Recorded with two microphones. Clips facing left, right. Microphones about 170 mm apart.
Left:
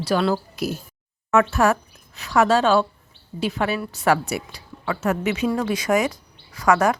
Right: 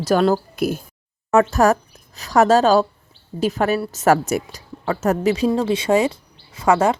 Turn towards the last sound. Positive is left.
turn(degrees=-25)  # may be behind; listen again after turning